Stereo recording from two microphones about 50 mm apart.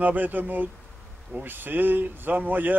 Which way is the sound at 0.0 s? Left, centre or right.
Right.